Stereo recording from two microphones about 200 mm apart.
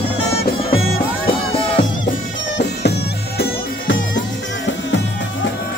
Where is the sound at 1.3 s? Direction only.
25° left (ahead or behind).